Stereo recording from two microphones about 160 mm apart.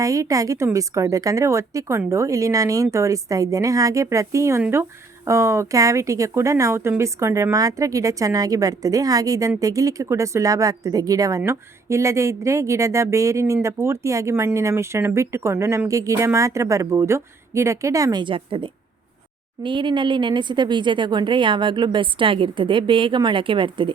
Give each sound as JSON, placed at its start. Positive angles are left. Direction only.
{"t": 0.0, "sound": "a woman's voice", "side_deg": -20}